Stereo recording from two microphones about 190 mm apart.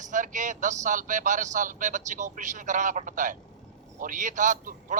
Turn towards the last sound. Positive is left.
turn(degrees=-40)  # may be behind; listen again after turning